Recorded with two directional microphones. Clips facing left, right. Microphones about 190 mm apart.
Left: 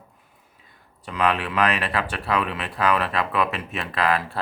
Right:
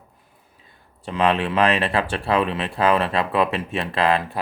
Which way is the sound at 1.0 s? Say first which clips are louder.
Right 3 dB; 25° right (ahead or behind).